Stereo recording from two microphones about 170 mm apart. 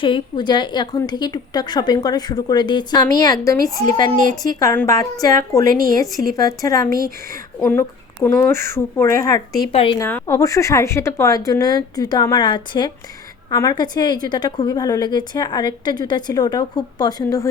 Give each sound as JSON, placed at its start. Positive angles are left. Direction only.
{"t": 0.0, "sound": "a woman's voice", "side_deg": 30}
{"t": 9.7, "sound": "a woman's voice", "side_deg": 30}
{"t": 10.0, "sound": "a woman's voice", "side_deg": 15}